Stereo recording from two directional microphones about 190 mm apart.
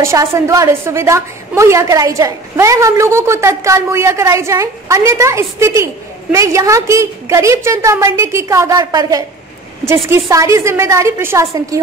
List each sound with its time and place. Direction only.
0.0 s a woman's voice: 15° right (ahead or behind)